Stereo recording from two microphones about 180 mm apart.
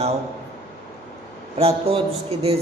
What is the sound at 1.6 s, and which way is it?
Speech, 35° right (ahead or behind).